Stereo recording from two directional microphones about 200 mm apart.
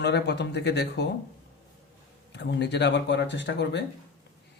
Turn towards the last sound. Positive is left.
turn(degrees=60)  # may be behind; listen again after turning